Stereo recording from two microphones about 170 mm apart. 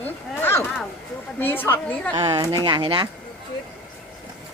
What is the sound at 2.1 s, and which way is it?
Speech, 25° right (ahead or behind).